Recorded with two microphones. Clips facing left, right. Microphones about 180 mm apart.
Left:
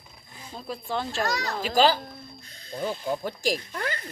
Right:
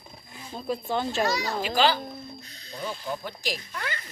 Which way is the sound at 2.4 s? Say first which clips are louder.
Left 4 dB; 50° left (ahead or behind).